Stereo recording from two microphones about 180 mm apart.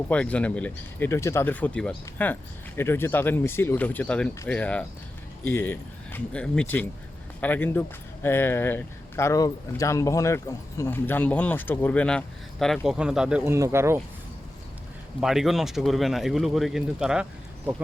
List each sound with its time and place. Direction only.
0.1 s speech: 5° left (ahead or behind); by 14.0 s 15° right (ahead or behind)
15.2 s speech: centre (ahead or behind)